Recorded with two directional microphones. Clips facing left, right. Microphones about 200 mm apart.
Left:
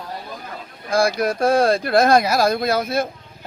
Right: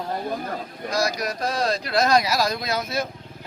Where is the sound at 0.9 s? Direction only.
55° left (ahead or behind).